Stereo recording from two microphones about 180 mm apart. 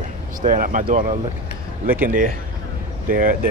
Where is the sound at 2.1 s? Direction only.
50° right (ahead or behind).